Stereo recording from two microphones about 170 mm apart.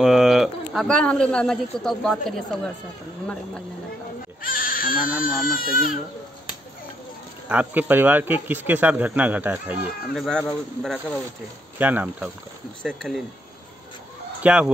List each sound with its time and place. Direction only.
0.0 s speech: centre (ahead or behind)
4.4 s speech: 55° left (ahead or behind)
7.4 s speech: 10° right (ahead or behind)
10.1 s speech: centre (ahead or behind)
11.8 s speech: 10° right (ahead or behind)
12.8 s speech: 5° left (ahead or behind)
14.4 s speech: 5° right (ahead or behind)